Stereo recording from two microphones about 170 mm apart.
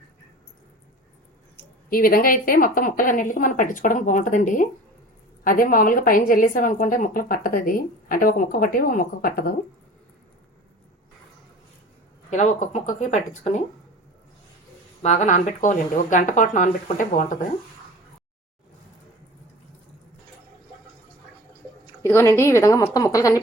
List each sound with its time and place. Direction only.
1.9 s a woman's voice: 55° left (ahead or behind)
12.3 s a woman's voice: 45° left (ahead or behind)
15.0 s a woman's voice: 45° left (ahead or behind)
22.0 s speech: 15° left (ahead or behind)